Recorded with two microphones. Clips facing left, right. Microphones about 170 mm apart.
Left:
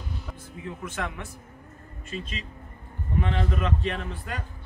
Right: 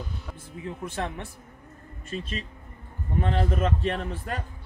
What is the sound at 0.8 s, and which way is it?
A man's voice, 35° right (ahead or behind).